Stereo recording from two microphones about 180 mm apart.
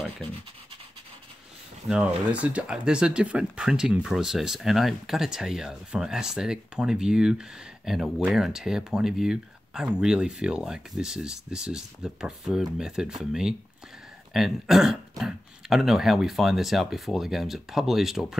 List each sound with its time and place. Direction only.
1.9 s speech: 5° right (ahead or behind)